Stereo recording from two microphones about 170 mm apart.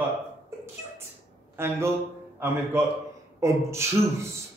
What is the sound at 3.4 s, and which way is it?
Speech, 15° right (ahead or behind).